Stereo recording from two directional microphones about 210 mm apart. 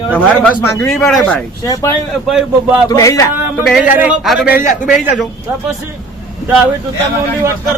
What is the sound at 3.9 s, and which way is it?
Speech, 5° right (ahead or behind).